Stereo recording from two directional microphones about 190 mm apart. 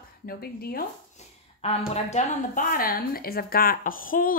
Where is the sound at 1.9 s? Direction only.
35° left (ahead or behind).